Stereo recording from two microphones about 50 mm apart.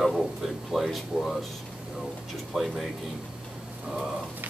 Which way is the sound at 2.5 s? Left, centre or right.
Centre.